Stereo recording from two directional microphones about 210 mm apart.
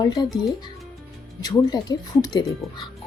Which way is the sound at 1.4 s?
20° left (ahead or behind).